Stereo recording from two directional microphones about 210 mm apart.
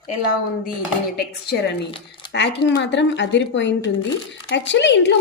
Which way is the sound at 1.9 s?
25° left (ahead or behind).